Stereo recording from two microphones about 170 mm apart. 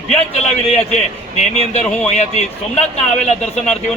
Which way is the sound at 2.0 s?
40° left (ahead or behind).